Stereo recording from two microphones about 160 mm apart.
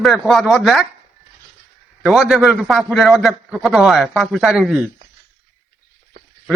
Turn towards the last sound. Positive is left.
turn(degrees=-5)  # may be behind; listen again after turning